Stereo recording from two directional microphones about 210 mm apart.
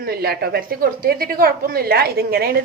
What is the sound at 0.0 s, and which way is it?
A woman's voice, 45° right (ahead or behind).